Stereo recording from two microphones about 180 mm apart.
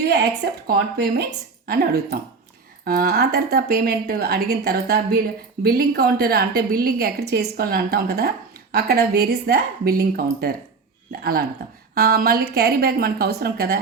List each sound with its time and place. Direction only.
0.7 s a woman's voice: 60° right (ahead or behind)